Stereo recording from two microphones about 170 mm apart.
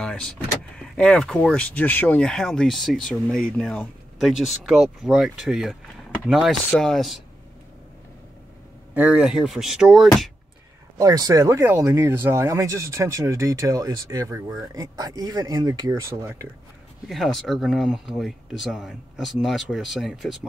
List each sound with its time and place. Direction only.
0.0 s vehicle: 5° left (ahead or behind)
0.7 s speech: 5° left (ahead or behind)
8.9 s speech: 10° right (ahead or behind)
11.0 s speech: 20° right (ahead or behind)
17.1 s speech: centre (ahead or behind)